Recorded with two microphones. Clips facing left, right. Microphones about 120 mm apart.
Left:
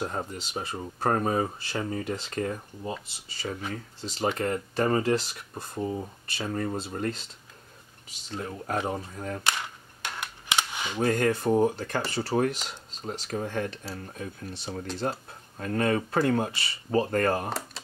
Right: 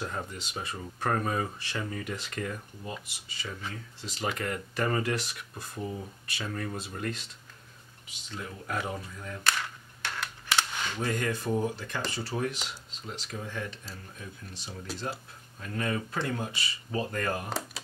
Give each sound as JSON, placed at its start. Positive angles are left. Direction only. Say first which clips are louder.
{"t": 0.0, "sound": "speech", "louder": "left 4 dB", "side_deg": 30}
{"t": 9.4, "sound": "cap gun", "louder": "left 1 dB", "side_deg": 20}
{"t": 11.1, "sound": "speech", "louder": "left 7 dB", "side_deg": 50}
{"t": 12.6, "sound": "speech", "louder": "left 5 dB", "side_deg": 40}
{"t": 17.5, "sound": "a sound", "louder": "left 2 dB", "side_deg": 0}